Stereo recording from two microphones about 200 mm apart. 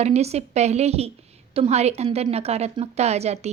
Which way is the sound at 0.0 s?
35° right (ahead or behind).